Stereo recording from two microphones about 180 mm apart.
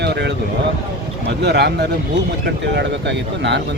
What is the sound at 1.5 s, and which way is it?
Speech, 65° right (ahead or behind).